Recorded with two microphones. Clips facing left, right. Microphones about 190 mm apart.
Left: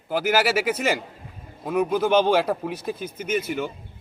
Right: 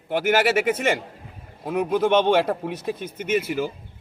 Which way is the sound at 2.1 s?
Centre (ahead or behind).